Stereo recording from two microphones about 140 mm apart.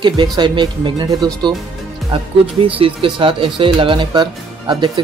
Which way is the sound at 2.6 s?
40° right (ahead or behind).